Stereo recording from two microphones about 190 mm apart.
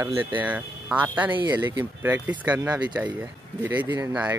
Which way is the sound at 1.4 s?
25° right (ahead or behind).